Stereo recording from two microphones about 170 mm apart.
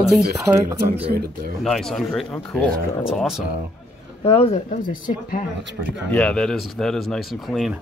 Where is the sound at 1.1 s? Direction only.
70° right (ahead or behind).